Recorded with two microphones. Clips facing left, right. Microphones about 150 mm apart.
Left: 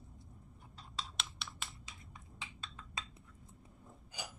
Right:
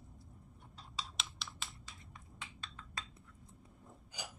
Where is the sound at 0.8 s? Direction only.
Centre (ahead or behind).